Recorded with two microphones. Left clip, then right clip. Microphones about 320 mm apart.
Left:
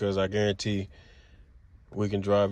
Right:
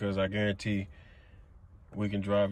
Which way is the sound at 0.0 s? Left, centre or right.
Centre.